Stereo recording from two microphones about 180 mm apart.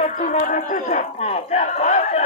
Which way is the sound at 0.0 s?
40° left (ahead or behind).